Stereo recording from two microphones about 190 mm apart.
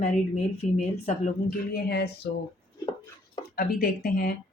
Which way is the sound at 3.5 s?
50° left (ahead or behind).